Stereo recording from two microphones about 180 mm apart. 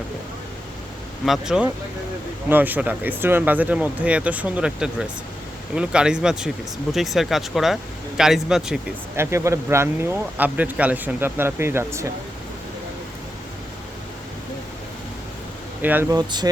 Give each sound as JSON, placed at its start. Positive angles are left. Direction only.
{"t": 1.2, "sound": "speech", "side_deg": 0}
{"t": 9.1, "sound": "speech", "side_deg": -15}
{"t": 15.8, "sound": "speech", "side_deg": -10}
{"t": 16.1, "sound": "speech", "side_deg": -25}